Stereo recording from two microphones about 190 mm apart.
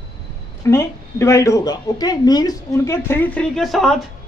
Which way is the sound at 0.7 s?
15° left (ahead or behind).